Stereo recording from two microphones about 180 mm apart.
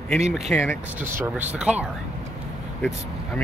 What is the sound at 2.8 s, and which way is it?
Speech, 5° left (ahead or behind).